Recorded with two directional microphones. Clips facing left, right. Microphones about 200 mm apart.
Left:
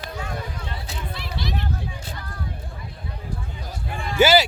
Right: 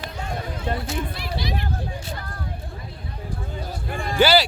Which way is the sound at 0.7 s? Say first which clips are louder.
Right 9 dB; 50° right (ahead or behind).